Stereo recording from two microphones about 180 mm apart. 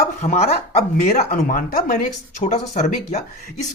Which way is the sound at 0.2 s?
40° left (ahead or behind).